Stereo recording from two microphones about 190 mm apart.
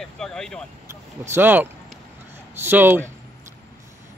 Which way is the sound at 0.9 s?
10° right (ahead or behind).